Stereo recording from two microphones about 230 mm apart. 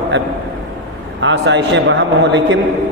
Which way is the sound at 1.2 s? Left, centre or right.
Right.